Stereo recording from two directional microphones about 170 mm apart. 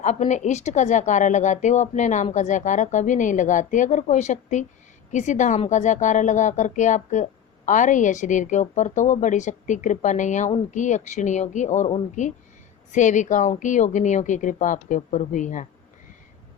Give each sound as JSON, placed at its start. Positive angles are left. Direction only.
{"t": 0.0, "sound": "a woman's voice", "side_deg": 45}